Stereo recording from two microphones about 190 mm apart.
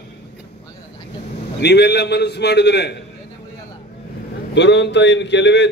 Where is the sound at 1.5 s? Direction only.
60° left (ahead or behind).